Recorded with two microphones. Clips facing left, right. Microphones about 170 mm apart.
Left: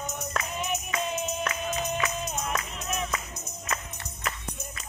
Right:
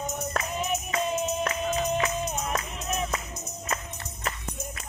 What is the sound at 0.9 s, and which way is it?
Music, 35° right (ahead or behind).